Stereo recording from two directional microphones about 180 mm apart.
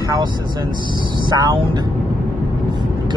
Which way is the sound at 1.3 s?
20° right (ahead or behind).